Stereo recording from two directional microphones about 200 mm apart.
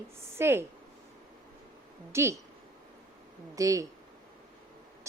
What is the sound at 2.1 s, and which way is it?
Speech, 15° right (ahead or behind).